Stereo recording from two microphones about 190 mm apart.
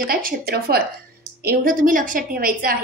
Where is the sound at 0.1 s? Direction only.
50° right (ahead or behind).